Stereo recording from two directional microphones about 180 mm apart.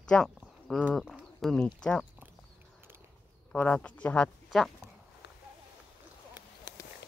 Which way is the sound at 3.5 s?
5° left (ahead or behind).